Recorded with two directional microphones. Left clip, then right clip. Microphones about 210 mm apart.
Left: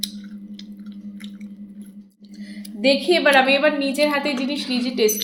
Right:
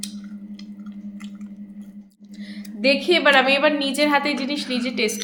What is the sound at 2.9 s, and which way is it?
A woman's voice, 10° right (ahead or behind).